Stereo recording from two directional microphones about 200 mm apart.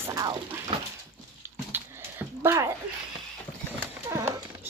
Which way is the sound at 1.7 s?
10° right (ahead or behind).